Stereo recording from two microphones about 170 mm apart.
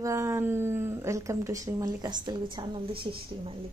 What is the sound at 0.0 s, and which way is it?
A woman's voice, 15° right (ahead or behind).